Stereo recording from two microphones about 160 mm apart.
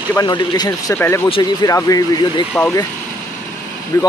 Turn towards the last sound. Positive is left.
turn(degrees=20)  # may be behind; listen again after turning